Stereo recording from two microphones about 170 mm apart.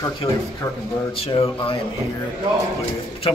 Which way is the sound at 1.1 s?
35° left (ahead or behind).